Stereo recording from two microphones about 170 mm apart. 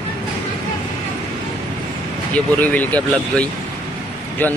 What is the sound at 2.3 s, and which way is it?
A man's voice, 10° left (ahead or behind).